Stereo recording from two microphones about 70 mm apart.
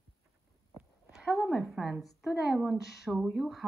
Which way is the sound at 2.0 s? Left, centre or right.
Centre.